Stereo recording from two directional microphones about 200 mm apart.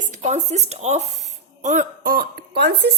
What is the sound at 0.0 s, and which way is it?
A woman's voice, 35° right (ahead or behind).